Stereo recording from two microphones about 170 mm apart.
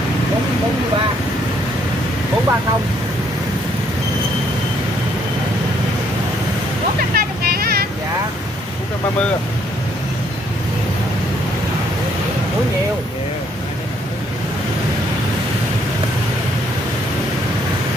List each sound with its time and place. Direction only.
7.2 s vehicle: 65° right (ahead or behind)